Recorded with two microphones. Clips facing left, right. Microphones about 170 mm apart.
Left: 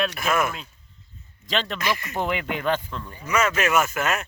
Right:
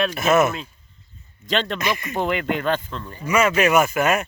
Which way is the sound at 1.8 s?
20° right (ahead or behind).